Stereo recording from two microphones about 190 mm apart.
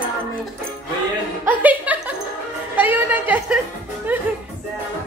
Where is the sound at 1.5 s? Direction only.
10° right (ahead or behind).